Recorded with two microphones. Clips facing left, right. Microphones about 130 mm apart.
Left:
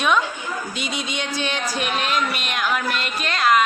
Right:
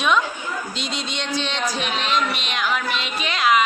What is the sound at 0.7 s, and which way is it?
A woman's voice, 5° left (ahead or behind).